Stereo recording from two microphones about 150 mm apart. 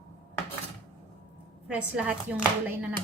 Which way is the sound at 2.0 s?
5° right (ahead or behind).